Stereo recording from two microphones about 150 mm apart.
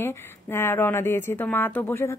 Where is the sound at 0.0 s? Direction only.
15° left (ahead or behind).